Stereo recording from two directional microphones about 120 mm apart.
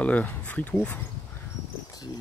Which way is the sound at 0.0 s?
10° left (ahead or behind).